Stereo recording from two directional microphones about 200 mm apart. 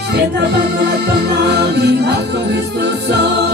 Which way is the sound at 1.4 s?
55° right (ahead or behind).